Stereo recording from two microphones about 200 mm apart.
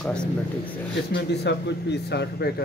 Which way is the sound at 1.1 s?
60° left (ahead or behind).